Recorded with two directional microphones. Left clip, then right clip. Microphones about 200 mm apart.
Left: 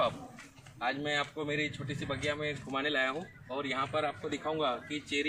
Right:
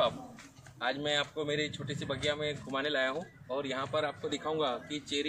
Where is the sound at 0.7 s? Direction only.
5° right (ahead or behind).